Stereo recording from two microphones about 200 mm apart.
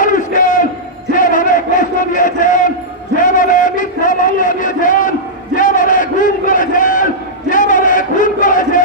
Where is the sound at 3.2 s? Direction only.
40° left (ahead or behind).